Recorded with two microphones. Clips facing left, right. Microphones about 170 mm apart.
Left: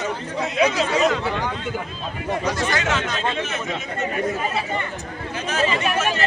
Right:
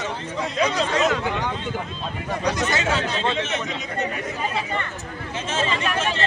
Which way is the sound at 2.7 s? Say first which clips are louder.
Even; 30° right (ahead or behind).